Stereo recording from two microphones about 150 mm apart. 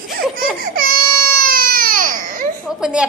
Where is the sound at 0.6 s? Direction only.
75° right (ahead or behind).